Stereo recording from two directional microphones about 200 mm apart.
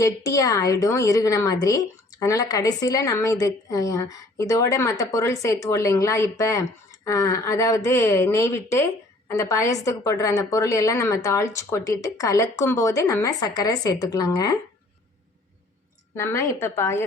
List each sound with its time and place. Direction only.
0.0 s a woman's voice: 15° left (ahead or behind)
16.1 s a woman's voice: 15° left (ahead or behind)